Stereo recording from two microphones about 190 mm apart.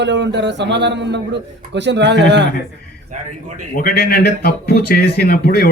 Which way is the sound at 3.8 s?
50° left (ahead or behind).